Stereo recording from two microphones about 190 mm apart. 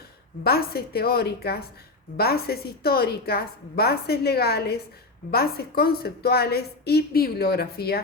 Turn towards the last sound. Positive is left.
turn(degrees=55)  # may be behind; listen again after turning